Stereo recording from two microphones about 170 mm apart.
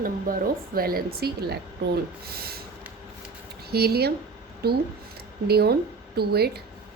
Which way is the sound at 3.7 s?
70° right (ahead or behind).